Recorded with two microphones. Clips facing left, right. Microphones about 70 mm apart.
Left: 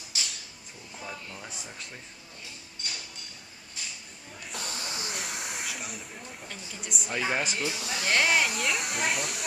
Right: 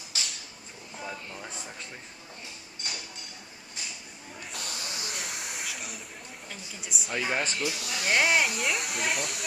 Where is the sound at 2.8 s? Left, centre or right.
Right.